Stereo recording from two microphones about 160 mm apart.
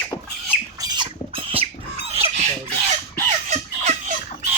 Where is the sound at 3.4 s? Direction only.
45° right (ahead or behind).